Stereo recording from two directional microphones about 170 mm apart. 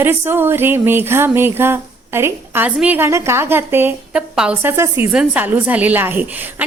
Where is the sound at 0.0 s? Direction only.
10° right (ahead or behind).